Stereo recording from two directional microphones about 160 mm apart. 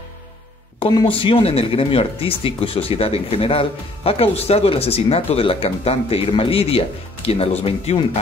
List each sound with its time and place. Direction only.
0.7 s speech: 30° left (ahead or behind)